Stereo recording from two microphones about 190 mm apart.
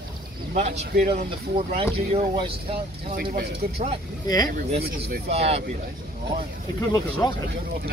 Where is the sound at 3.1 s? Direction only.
50° right (ahead or behind).